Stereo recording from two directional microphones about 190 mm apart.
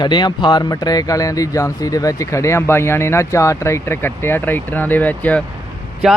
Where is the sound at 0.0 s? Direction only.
20° left (ahead or behind).